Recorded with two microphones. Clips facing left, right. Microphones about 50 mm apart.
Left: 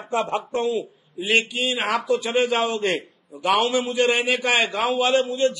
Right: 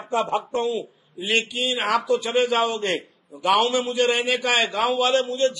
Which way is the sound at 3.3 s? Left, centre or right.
Left.